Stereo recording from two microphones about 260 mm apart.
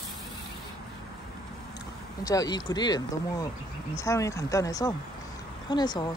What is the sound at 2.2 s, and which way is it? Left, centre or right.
A woman's voice, centre.